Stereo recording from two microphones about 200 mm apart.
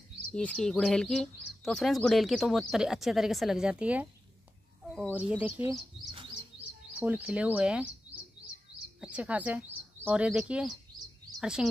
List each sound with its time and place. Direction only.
0.3 s speech: 5° left (ahead or behind)
5.1 s speech: 5° right (ahead or behind)
7.0 s speech: 5° right (ahead or behind)
9.0 s a woman's voice: 5° right (ahead or behind)